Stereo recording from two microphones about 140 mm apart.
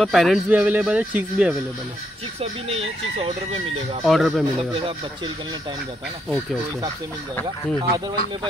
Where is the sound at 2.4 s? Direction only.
45° right (ahead or behind).